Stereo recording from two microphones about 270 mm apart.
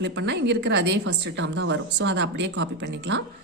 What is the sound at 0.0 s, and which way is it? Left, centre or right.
A woman's voice, right.